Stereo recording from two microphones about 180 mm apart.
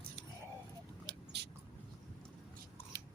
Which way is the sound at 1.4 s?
70° right (ahead or behind).